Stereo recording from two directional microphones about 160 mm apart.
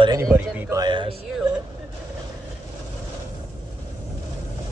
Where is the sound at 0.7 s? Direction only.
30° right (ahead or behind).